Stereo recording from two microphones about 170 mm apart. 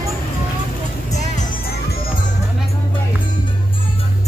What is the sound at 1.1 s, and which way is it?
Music, 45° left (ahead or behind).